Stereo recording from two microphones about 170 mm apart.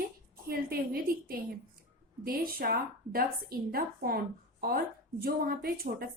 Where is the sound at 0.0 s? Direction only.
60° right (ahead or behind).